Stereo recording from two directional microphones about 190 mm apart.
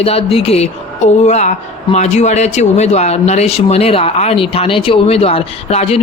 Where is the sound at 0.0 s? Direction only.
30° left (ahead or behind).